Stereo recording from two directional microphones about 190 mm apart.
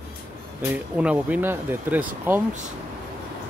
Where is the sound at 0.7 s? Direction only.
5° right (ahead or behind).